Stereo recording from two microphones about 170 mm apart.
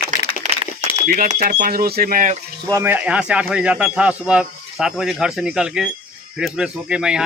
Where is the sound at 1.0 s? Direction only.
60° right (ahead or behind).